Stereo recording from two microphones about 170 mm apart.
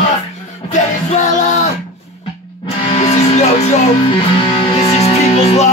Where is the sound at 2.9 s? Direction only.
40° left (ahead or behind).